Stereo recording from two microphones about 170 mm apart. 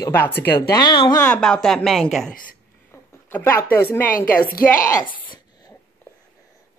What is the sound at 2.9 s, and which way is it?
Speech, 15° left (ahead or behind).